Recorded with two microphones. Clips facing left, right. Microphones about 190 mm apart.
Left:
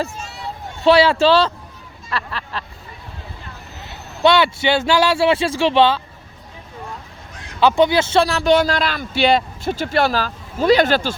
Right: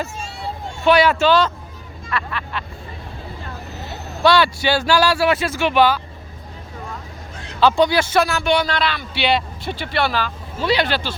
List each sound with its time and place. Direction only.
0.9 s speech: 30° left (ahead or behind)
2.0 s vehicle: 35° left (ahead or behind)
4.2 s speech: 20° left (ahead or behind)
7.6 s speech: 20° left (ahead or behind); by 11.1 s 45° left (ahead or behind)